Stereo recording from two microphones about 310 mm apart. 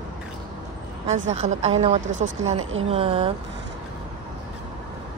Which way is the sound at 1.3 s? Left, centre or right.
Right.